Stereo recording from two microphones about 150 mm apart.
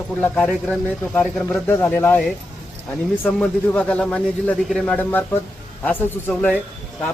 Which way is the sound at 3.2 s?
5° left (ahead or behind).